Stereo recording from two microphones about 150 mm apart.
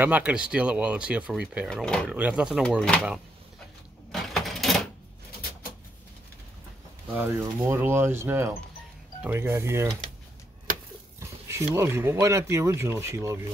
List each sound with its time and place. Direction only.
0.0 s speech: 10° right (ahead or behind)
1.7 s speech: 5° left (ahead or behind)
2.1 s speech: 10° right (ahead or behind)
4.1 s a sound: centre (ahead or behind)
7.2 s speech: 15° right (ahead or behind)
11.1 s speech: 20° right (ahead or behind)